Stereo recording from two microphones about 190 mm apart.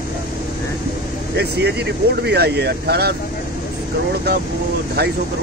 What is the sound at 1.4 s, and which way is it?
Speech, 60° right (ahead or behind).